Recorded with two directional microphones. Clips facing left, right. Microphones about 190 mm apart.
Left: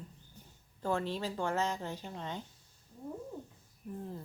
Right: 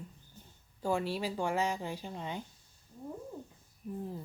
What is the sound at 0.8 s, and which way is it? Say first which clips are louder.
Speech: right 1 dB; 15° right (ahead or behind).